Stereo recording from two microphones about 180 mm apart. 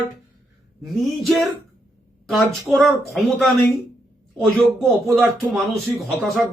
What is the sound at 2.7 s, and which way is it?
Speech, centre (ahead or behind).